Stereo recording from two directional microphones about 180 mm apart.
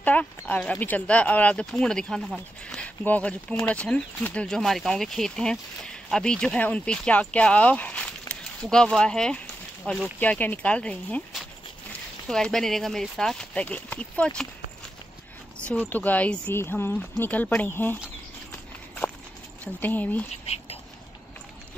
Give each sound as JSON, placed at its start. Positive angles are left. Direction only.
{"t": 0.0, "sound": "speech", "side_deg": 10}
{"t": 15.7, "sound": "speech", "side_deg": 10}
{"t": 19.6, "sound": "speech", "side_deg": 10}
{"t": 20.4, "sound": "whispering", "side_deg": 35}